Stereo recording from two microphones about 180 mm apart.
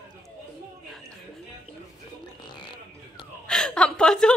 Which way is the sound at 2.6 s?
25° left (ahead or behind).